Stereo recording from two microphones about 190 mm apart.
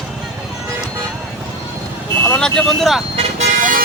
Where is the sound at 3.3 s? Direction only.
45° right (ahead or behind).